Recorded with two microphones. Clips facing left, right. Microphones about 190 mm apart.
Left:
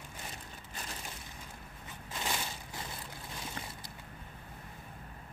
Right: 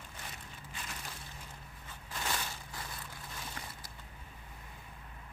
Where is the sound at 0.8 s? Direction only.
40° left (ahead or behind).